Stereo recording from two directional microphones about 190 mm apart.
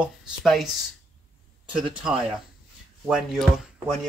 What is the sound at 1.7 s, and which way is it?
Speech, 5° right (ahead or behind).